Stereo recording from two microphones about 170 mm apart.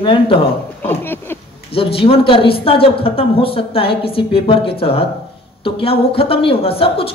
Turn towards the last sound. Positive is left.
turn(degrees=35)  # may be behind; listen again after turning